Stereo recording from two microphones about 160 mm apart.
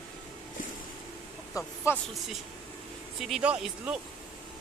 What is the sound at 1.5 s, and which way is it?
Speech, 15° left (ahead or behind).